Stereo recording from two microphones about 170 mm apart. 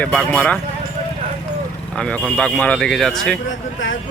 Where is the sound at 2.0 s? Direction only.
5° left (ahead or behind).